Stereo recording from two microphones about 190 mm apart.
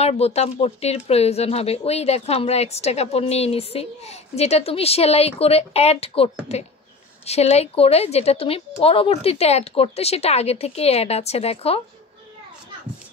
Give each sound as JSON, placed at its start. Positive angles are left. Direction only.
{"t": 0.0, "sound": "speech", "side_deg": 35}